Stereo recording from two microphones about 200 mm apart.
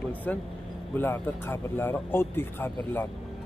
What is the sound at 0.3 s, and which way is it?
Speech, 5° left (ahead or behind).